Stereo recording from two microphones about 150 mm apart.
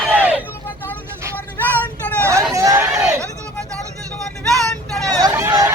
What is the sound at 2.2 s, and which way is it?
Hubbub, 20° right (ahead or behind).